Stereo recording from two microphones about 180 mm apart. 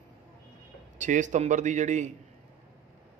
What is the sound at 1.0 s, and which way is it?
Speech, 45° right (ahead or behind).